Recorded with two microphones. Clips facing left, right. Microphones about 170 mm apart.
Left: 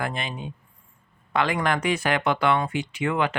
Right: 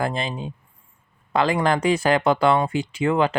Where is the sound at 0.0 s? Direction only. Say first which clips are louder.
Right 5 dB; 35° right (ahead or behind).